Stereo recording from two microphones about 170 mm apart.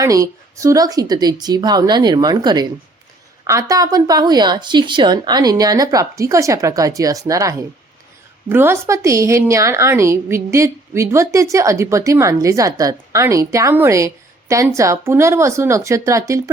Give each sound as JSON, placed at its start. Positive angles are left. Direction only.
{"t": 0.0, "sound": "a woman's voice", "side_deg": -20}